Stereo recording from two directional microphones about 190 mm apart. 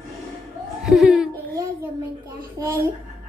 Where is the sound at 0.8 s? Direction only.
5° right (ahead or behind).